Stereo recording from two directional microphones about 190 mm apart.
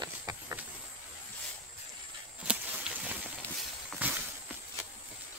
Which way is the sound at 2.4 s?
5° right (ahead or behind).